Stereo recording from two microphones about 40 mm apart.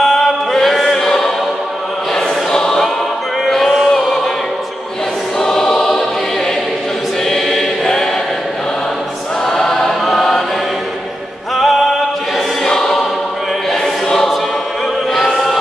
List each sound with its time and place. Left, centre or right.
0.0 s chant: centre
2.1 s choir: centre
3.4 s a sound: centre
5.4 s choir: centre
7.2 s choir: centre
9.5 s choir: centre
11.5 s music: centre
12.6 s choir: centre
14.0 s choir: centre